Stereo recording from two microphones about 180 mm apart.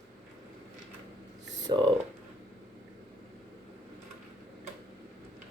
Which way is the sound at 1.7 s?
25° right (ahead or behind).